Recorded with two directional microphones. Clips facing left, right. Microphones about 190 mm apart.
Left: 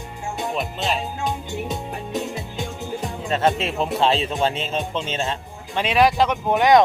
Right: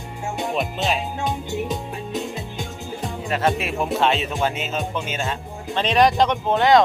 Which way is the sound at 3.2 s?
25° left (ahead or behind).